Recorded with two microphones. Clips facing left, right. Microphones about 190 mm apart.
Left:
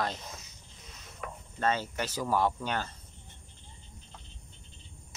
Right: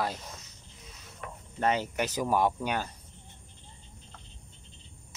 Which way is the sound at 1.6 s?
15° right (ahead or behind).